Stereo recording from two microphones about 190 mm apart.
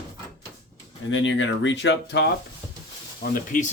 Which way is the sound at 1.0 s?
80° left.